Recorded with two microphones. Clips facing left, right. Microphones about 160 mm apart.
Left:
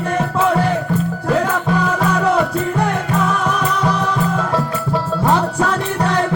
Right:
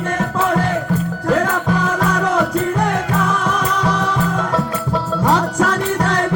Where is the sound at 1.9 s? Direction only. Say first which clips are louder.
Left 3 dB; 5° left (ahead or behind).